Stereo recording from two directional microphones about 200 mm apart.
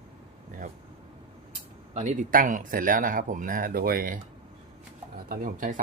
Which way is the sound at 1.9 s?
35° right (ahead or behind).